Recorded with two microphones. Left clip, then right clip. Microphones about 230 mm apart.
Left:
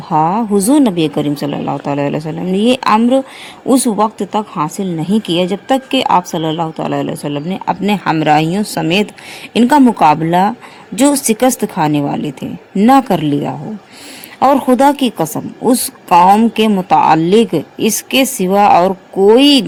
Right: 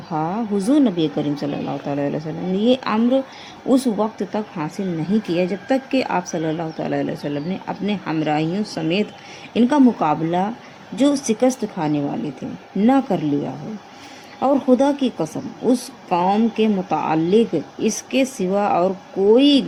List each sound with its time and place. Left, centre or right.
0.1 s speech: left